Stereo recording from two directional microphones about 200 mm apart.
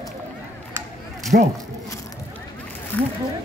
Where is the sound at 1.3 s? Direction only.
45° right (ahead or behind).